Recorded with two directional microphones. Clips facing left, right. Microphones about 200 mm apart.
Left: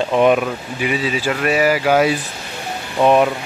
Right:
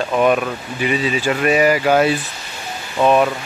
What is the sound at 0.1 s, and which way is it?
Speech, 20° left (ahead or behind).